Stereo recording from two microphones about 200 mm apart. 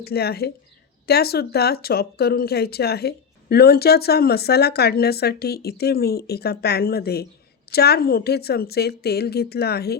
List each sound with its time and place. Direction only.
0.0 s speech: 50° left (ahead or behind)